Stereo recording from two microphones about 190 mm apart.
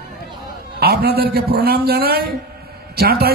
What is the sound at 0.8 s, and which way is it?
Speech, 55° right (ahead or behind).